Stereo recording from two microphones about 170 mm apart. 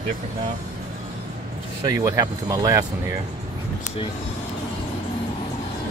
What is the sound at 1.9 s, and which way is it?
Speech, 20° right (ahead or behind).